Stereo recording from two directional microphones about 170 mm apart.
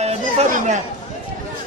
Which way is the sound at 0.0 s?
40° right (ahead or behind).